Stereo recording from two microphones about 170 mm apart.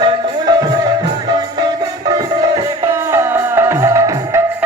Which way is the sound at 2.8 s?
15° right (ahead or behind).